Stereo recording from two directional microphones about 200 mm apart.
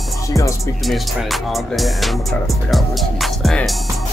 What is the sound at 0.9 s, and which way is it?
Speech, centre (ahead or behind).